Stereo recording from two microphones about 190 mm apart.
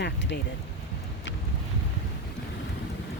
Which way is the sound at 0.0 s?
70° left (ahead or behind).